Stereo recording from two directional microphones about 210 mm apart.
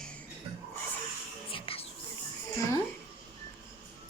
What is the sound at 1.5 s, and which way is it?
Music, 25° left (ahead or behind).